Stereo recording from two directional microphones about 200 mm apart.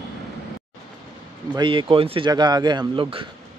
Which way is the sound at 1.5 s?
25° right (ahead or behind).